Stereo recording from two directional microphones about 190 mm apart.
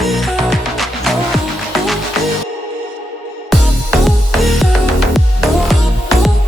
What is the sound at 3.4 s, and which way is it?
Music, centre (ahead or behind).